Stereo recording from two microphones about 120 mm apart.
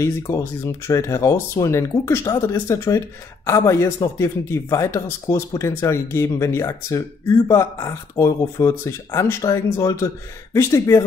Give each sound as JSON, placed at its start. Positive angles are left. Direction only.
{"t": 0.0, "sound": "speech", "side_deg": 25}